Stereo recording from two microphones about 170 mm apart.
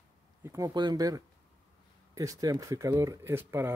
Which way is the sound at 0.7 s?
25° right (ahead or behind).